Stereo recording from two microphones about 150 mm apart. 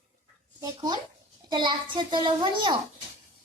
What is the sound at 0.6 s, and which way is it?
A child's voice, 25° right (ahead or behind).